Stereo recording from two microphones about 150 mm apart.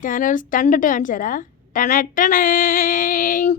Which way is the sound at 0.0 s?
60° left (ahead or behind).